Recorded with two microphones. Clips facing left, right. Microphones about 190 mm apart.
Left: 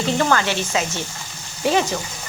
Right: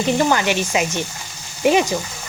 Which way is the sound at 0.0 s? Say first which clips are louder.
Right 2 dB; 15° right (ahead or behind).